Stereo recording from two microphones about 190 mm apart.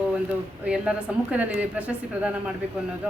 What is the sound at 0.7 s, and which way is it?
A woman's voice, 5° right (ahead or behind).